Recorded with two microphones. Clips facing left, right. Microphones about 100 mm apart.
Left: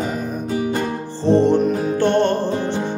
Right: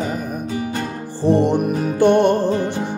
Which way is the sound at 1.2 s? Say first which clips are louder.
Left 1 dB; 15° right (ahead or behind).